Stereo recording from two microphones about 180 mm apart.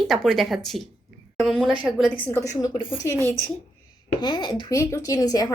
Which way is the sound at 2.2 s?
15° left (ahead or behind).